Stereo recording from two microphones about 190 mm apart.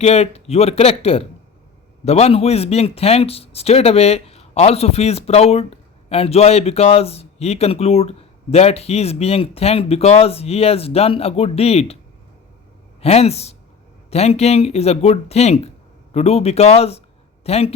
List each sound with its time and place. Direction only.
0.0 s speech: 35° left (ahead or behind)
13.0 s speech: 35° left (ahead or behind)